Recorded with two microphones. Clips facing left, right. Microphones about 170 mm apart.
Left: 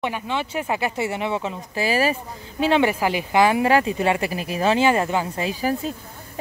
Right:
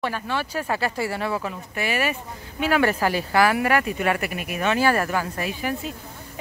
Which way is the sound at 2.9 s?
15° left (ahead or behind).